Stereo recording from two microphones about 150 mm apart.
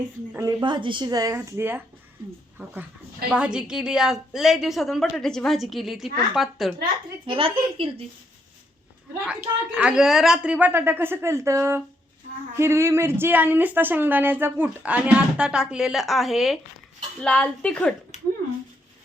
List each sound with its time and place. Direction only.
0.6 s speech: 30° right (ahead or behind); by 2.7 s 15° right (ahead or behind)
3.2 s a woman's voice: 5° right (ahead or behind)
7.3 s speech: 35° right (ahead or behind)
9.2 s speech: 5° right (ahead or behind)
18.1 s a sound: 50° left (ahead or behind)